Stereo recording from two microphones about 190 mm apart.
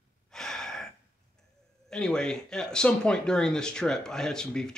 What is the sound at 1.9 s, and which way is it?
Speech, 5° left (ahead or behind).